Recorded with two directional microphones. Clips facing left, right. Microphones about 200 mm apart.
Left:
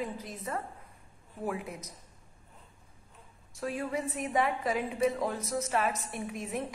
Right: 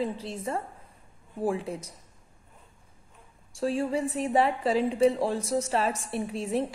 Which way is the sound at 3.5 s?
30° right (ahead or behind).